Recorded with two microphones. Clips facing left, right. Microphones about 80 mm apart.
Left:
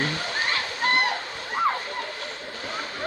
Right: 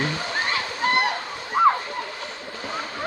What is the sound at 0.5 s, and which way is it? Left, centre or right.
Splash, centre.